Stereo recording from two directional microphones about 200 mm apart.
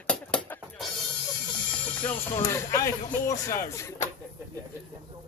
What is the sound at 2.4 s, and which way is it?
Speech, 15° left (ahead or behind).